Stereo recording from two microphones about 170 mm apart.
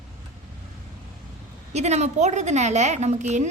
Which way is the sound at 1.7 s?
40° right (ahead or behind).